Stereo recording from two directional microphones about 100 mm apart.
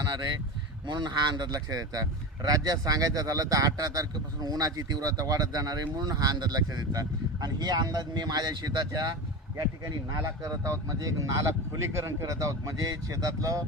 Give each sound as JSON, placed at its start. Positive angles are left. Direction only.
{"t": 0.9, "sound": "speech", "side_deg": -45}
{"t": 10.2, "sound": "speech", "side_deg": -30}